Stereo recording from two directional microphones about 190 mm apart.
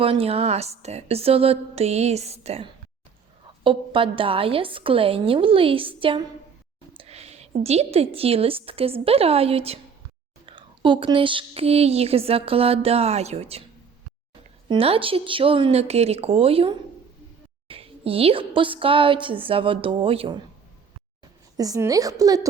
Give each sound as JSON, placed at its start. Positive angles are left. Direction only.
{"t": 0.0, "sound": "a woman's voice", "side_deg": -30}
{"t": 14.7, "sound": "a woman's voice", "side_deg": -30}
{"t": 21.5, "sound": "a woman's voice", "side_deg": -20}